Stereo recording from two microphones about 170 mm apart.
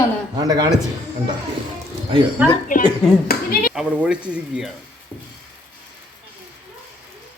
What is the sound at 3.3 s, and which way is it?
Speech, 60° left (ahead or behind).